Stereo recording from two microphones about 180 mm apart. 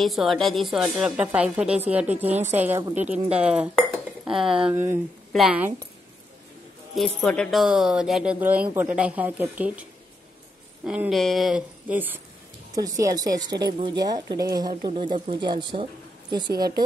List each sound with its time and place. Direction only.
0.0 s a woman's voice: centre (ahead or behind)
7.0 s speech: centre (ahead or behind)
10.9 s a woman's voice: 5° right (ahead or behind)
12.7 s a woman's voice: 20° right (ahead or behind)